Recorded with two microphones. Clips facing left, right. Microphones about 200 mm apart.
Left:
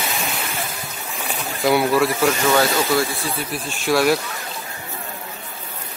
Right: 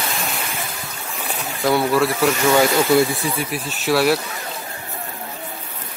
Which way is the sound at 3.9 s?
5° right (ahead or behind).